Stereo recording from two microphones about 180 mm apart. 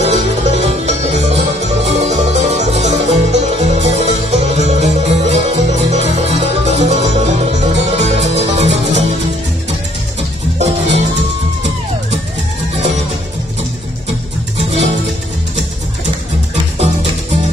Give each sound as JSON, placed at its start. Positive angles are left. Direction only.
{"t": 0.0, "sound": "music", "side_deg": -40}
{"t": 10.6, "sound": "music", "side_deg": -40}